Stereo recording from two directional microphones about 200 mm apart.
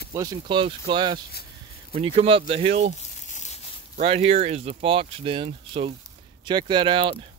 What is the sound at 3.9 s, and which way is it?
Speech, 30° right (ahead or behind).